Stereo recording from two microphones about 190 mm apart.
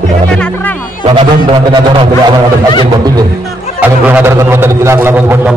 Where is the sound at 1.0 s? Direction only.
30° right (ahead or behind).